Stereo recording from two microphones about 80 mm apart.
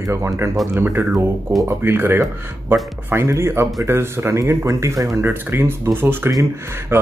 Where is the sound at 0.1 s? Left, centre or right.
Right.